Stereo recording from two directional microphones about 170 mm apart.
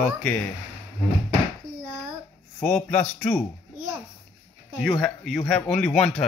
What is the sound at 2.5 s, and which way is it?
Speech, 10° left (ahead or behind).